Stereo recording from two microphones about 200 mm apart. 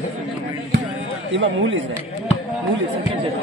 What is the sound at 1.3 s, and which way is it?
Speech, 70° right (ahead or behind).